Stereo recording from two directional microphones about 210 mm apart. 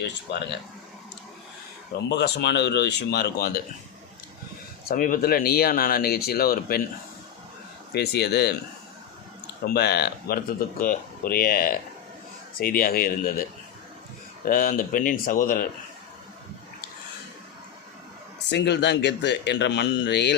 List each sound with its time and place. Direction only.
0.0 s speech: 55° left (ahead or behind)
2.0 s speech: 50° left (ahead or behind)
4.9 s speech: 40° left (ahead or behind)
7.9 s speech: 50° left (ahead or behind)
9.6 s speech: 50° left (ahead or behind)
14.4 s speech: 40° left (ahead or behind)
18.5 s speech: 55° left (ahead or behind)